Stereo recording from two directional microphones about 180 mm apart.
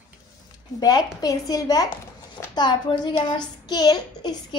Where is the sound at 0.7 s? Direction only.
20° left (ahead or behind).